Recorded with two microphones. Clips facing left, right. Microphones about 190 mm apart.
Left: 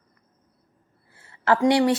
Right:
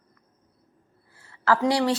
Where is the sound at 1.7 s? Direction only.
25° left (ahead or behind).